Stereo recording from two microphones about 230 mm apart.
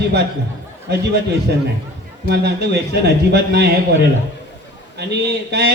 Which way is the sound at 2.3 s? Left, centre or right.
Right.